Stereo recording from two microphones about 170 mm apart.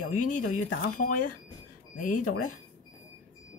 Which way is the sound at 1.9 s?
50° left (ahead or behind).